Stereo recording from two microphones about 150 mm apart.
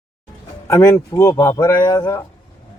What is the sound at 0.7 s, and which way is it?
Speech, 20° left (ahead or behind).